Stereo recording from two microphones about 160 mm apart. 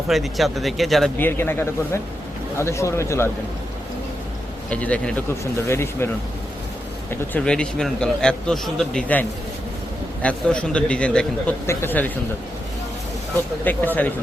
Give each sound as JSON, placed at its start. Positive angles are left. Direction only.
{"t": 0.1, "sound": "a man's voice", "side_deg": 0}
{"t": 1.2, "sound": "a man's voice", "side_deg": 15}
{"t": 4.7, "sound": "a man's voice", "side_deg": 10}
{"t": 7.3, "sound": "a man's voice", "side_deg": 5}
{"t": 10.2, "sound": "a man's voice", "side_deg": 5}
{"t": 13.7, "sound": "a man's voice", "side_deg": 10}